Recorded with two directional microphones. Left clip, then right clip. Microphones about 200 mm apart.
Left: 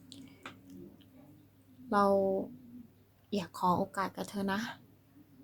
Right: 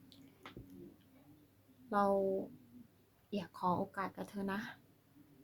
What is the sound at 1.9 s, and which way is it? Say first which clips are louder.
Speech: left 5 dB; 15° left (ahead or behind).